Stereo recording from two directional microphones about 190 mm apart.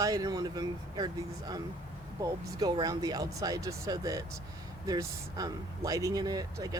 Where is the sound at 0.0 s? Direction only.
20° right (ahead or behind).